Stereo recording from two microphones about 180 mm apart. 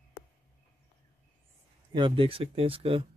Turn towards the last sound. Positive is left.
turn(degrees=-30)  # may be behind; listen again after turning